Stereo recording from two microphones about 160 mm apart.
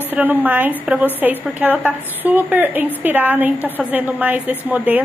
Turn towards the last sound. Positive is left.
turn(degrees=-10)  # may be behind; listen again after turning